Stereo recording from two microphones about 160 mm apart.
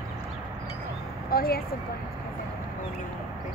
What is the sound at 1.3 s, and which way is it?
Speech, 70° left (ahead or behind).